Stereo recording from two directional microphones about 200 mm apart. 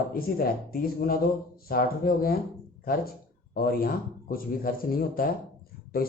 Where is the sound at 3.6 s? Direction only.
45° left (ahead or behind).